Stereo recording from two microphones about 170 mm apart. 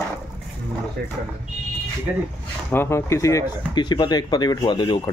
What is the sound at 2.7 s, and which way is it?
Speech, 15° left (ahead or behind).